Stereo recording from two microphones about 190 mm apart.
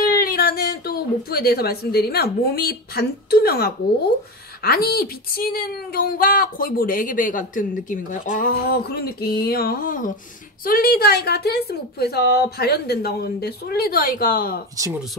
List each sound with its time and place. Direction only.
0.0 s a woman's voice: 50° left (ahead or behind)